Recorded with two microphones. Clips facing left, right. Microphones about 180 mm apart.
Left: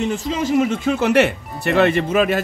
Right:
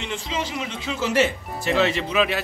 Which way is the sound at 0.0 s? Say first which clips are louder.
Left 8 dB; 45° left (ahead or behind).